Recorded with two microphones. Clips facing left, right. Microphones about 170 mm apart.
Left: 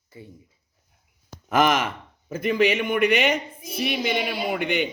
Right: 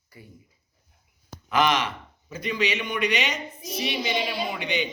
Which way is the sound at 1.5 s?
45° left (ahead or behind).